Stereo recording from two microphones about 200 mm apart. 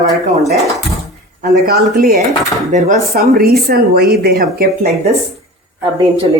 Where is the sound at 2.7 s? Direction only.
35° right (ahead or behind); by 4.9 s 50° right (ahead or behind).